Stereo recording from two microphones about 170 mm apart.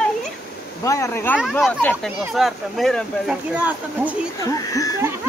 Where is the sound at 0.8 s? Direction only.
20° left (ahead or behind); by 4.2 s 10° right (ahead or behind).